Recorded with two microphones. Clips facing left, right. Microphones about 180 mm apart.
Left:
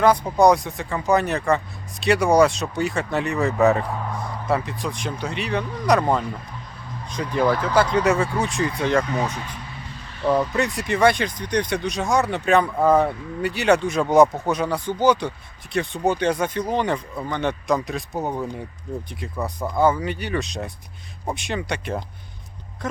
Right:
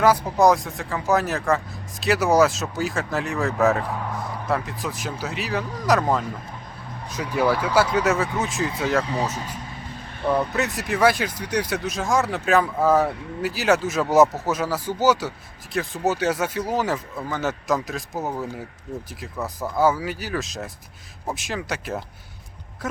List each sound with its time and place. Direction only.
0.0 s speech: 5° right (ahead or behind)
10.2 s speech: 55° right (ahead or behind)
10.5 s speech: centre (ahead or behind)